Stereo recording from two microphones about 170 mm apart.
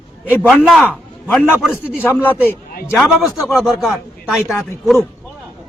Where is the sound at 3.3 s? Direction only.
Centre (ahead or behind).